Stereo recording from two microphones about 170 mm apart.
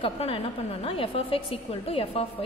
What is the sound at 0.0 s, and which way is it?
A woman's voice, 35° left (ahead or behind).